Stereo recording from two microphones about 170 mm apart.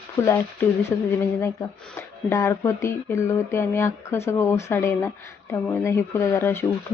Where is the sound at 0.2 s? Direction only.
15° left (ahead or behind).